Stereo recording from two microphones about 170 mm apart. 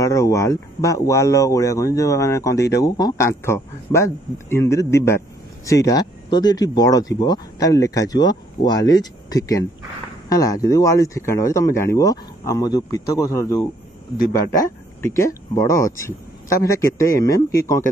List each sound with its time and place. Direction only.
0.0 s a man's voice: 20° left (ahead or behind)
14.5 s a sound: 20° left (ahead or behind)
15.1 s speech: 15° left (ahead or behind)